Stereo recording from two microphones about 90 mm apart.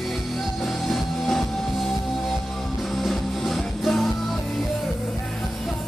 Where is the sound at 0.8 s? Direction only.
Centre (ahead or behind).